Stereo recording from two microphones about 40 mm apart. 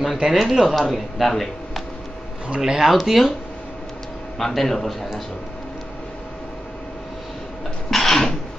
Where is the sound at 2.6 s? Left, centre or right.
Centre.